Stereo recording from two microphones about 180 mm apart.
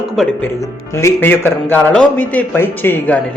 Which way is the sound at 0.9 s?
10° left (ahead or behind).